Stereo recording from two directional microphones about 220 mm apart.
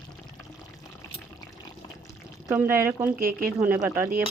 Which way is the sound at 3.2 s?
40° right (ahead or behind).